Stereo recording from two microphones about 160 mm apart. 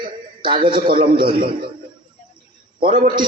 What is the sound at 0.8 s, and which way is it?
Speech, 65° right (ahead or behind).